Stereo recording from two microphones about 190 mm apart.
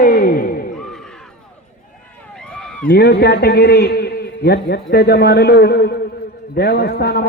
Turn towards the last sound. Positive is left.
turn(degrees=55)  # may be behind; listen again after turning